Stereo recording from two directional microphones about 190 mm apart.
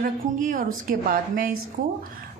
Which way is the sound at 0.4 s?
45° right (ahead or behind).